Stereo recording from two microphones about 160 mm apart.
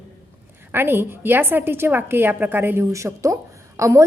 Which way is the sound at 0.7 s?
15° right (ahead or behind).